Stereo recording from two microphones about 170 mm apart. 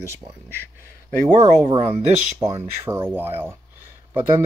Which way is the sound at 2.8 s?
15° right (ahead or behind).